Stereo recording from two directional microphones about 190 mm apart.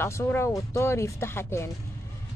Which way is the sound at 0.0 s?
15° left (ahead or behind).